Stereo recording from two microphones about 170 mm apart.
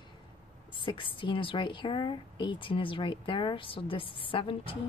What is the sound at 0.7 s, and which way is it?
A woman's voice, 30° left (ahead or behind).